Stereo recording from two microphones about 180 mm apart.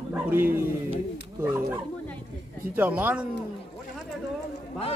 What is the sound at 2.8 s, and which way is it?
Speech, 10° right (ahead or behind).